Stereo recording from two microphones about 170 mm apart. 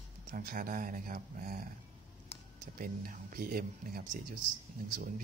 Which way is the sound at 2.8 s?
55° right (ahead or behind).